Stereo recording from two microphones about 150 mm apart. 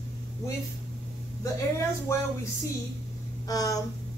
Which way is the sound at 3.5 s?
25° left (ahead or behind).